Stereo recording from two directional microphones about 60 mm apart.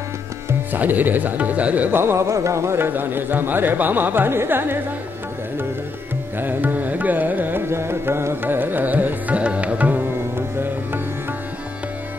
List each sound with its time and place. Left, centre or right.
0.7 s speech: right
1.9 s speech: right
2.2 s carnatic music: right
2.9 s speech: right
6.4 s music: right